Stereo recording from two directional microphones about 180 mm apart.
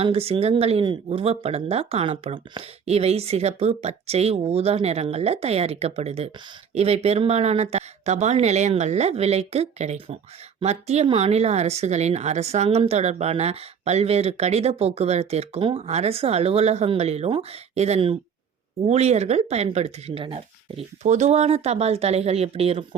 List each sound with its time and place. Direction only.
0.0 s speech: 35° right (ahead or behind)